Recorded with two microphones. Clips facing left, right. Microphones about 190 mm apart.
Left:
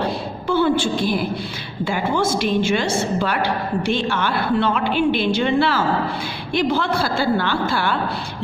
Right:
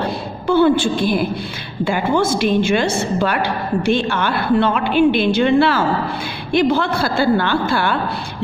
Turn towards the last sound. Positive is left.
turn(degrees=-55)  # may be behind; listen again after turning